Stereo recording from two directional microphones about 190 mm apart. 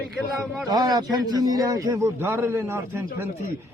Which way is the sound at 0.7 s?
20° right (ahead or behind).